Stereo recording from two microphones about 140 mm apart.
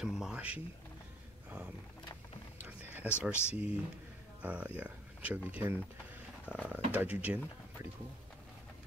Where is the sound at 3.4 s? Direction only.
10° right (ahead or behind).